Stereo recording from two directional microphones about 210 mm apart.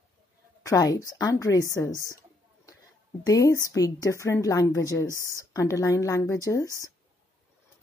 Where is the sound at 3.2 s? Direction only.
15° left (ahead or behind).